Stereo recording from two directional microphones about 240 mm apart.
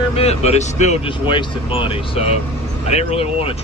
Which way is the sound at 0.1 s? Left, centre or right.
Left.